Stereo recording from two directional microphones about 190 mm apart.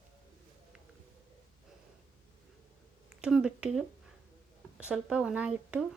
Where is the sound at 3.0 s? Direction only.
5° right (ahead or behind).